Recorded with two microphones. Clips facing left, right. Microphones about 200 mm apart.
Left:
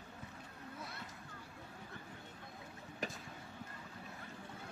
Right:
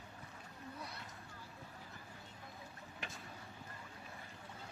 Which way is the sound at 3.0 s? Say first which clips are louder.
Left 8 dB; 40° left (ahead or behind).